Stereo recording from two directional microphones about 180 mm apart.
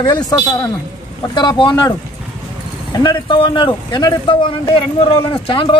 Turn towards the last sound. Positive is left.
turn(degrees=25)  # may be behind; listen again after turning